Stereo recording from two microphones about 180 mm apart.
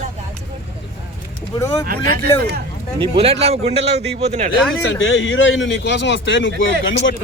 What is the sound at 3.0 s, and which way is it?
Speech, 35° right (ahead or behind).